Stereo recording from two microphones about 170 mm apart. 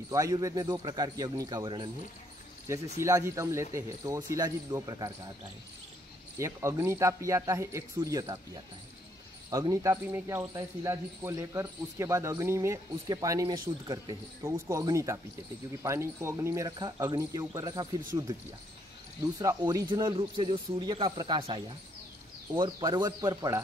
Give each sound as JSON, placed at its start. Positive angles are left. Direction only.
{"t": 0.1, "sound": "speech", "side_deg": -20}
{"t": 3.0, "sound": "speech", "side_deg": -15}
{"t": 6.3, "sound": "speech", "side_deg": -15}
{"t": 9.5, "sound": "speech", "side_deg": -20}
{"t": 19.3, "sound": "speech", "side_deg": -20}